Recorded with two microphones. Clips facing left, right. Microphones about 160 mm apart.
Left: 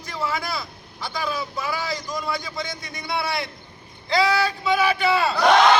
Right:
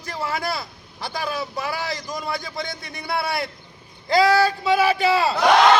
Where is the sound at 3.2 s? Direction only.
50° right (ahead or behind); by 5.3 s 35° right (ahead or behind).